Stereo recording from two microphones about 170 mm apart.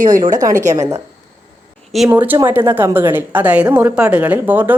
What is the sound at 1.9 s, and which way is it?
A woman's voice, 5° right (ahead or behind).